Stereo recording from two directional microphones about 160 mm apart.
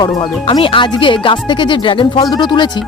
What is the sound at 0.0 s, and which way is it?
Speech, 30° left (ahead or behind).